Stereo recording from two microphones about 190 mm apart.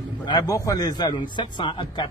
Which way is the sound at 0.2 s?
20° left (ahead or behind).